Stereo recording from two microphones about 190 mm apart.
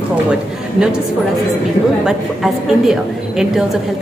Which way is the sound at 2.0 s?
Centre (ahead or behind).